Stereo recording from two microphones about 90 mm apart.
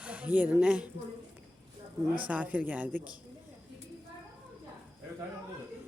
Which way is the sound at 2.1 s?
15° right (ahead or behind).